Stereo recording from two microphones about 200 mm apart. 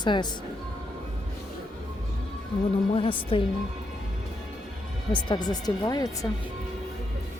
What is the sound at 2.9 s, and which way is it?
Speech, 25° left (ahead or behind).